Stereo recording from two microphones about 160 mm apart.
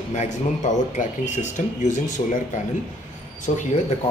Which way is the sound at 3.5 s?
45° left (ahead or behind).